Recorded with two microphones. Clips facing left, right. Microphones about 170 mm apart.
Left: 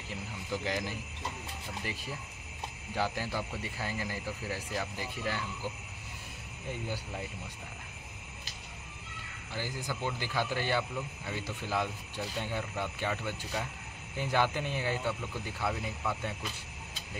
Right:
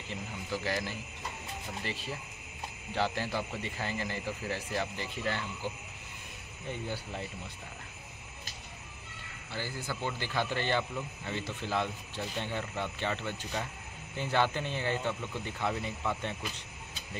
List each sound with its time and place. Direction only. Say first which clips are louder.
0.1 s speech: even; 15° left (ahead or behind)
6.7 s speech: right 1 dB; 10° left (ahead or behind)
9.5 s speech: even; 15° left (ahead or behind)